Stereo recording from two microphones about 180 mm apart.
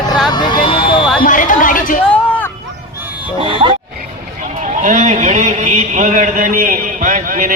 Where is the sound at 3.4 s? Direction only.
30° right (ahead or behind).